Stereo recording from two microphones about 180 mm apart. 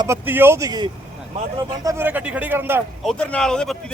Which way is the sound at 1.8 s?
10° right (ahead or behind).